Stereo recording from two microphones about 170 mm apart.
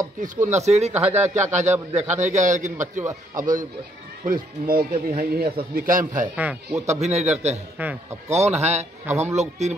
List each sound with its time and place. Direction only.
0.2 s a man's voice: 45° right (ahead or behind)
6.3 s speech: 5° right (ahead or behind)
6.9 s speech: 40° right (ahead or behind)